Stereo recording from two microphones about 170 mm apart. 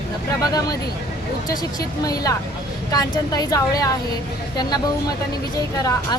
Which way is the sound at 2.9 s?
20° left (ahead or behind).